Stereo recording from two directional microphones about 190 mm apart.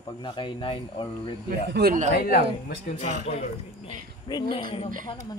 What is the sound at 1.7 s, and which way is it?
Speech, 60° right (ahead or behind).